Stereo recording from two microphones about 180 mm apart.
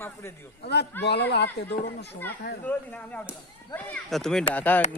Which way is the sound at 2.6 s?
10° left (ahead or behind).